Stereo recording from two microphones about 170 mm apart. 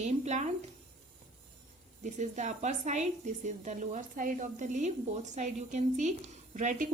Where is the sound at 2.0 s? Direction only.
45° right (ahead or behind).